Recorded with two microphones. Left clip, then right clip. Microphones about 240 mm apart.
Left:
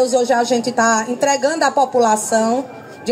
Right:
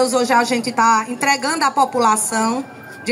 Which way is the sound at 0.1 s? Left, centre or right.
Centre.